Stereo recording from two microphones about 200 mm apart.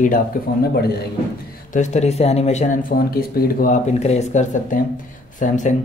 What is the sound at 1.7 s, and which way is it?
Speech, 35° left (ahead or behind).